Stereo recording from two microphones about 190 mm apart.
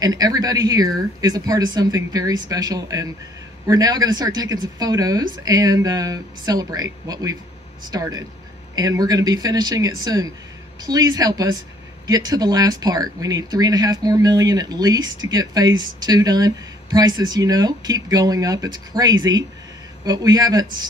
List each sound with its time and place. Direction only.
0.0 s speech: 20° right (ahead or behind)